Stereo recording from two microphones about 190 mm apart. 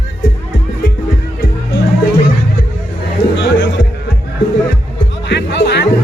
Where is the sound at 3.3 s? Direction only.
65° left (ahead or behind).